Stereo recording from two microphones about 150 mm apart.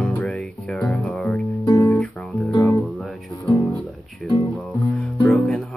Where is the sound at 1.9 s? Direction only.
5° left (ahead or behind).